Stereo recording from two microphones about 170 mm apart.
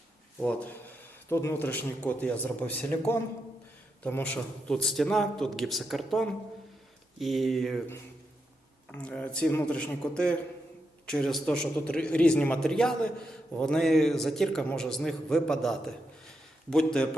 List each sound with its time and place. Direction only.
0.3 s a man's voice: 10° left (ahead or behind)
8.9 s a man's voice: 5° left (ahead or behind)